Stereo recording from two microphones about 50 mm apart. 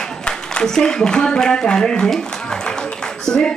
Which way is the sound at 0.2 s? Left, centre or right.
Centre.